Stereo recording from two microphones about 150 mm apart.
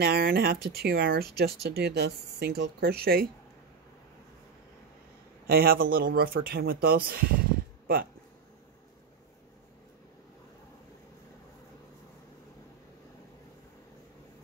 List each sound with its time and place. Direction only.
0.0 s speech: 90° right
5.5 s speech: 90° right
7.8 s a sound: 90° right